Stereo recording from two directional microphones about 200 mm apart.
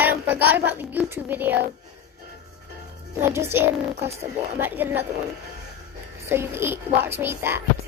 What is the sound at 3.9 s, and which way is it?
Speech, 30° right (ahead or behind).